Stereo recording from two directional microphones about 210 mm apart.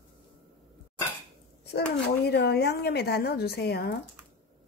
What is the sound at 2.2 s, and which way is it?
A woman's voice, 50° left (ahead or behind).